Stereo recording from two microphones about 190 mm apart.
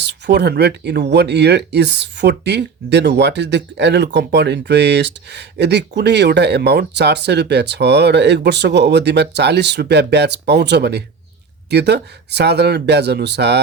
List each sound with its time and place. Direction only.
0.0 s speech: 65° right (ahead or behind)